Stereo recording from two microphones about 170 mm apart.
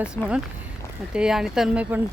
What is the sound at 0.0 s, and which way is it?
Speech, 5° right (ahead or behind).